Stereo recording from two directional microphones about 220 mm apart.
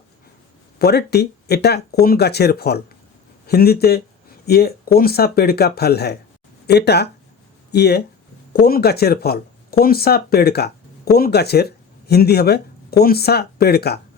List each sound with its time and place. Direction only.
0.8 s speech: 45° left (ahead or behind)